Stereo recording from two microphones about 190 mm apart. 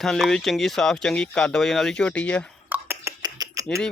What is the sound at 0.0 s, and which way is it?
Speech, centre (ahead or behind).